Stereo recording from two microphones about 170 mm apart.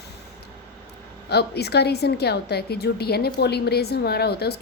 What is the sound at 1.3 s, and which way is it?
A woman's voice, 75° left (ahead or behind).